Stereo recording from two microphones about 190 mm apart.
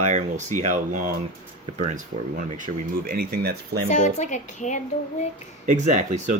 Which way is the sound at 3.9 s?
40° left (ahead or behind).